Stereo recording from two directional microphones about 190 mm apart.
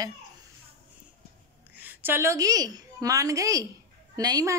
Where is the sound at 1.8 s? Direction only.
10° right (ahead or behind).